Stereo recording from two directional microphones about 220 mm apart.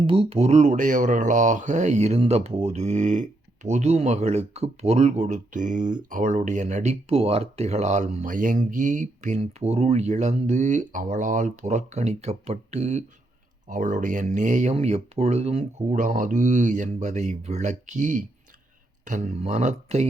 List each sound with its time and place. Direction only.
0.0 s speech: 25° right (ahead or behind)